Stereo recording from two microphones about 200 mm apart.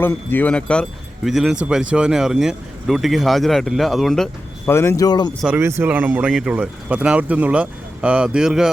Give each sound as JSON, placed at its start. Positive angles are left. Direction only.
{"t": 0.0, "sound": "speech", "side_deg": 10}
{"t": 4.7, "sound": "speech", "side_deg": 10}
{"t": 5.4, "sound": "speech", "side_deg": -10}